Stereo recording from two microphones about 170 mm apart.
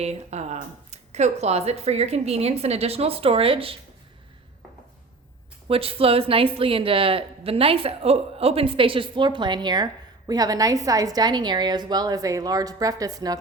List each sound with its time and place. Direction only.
0.0 s speech: 40° right (ahead or behind)
5.6 s speech: 35° right (ahead or behind)